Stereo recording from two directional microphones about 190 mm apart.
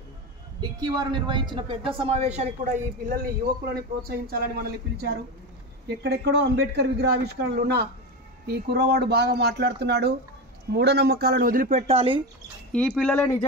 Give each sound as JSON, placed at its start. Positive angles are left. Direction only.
{"t": 0.6, "sound": "a man's voice", "side_deg": -20}
{"t": 11.9, "sound": "speech", "side_deg": -30}
{"t": 12.7, "sound": "speech", "side_deg": 5}